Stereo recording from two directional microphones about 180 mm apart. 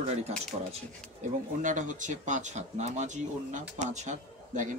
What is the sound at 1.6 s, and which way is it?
Speech, 45° right (ahead or behind).